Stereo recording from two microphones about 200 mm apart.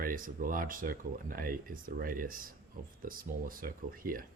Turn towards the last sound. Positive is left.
turn(degrees=-45)  # may be behind; listen again after turning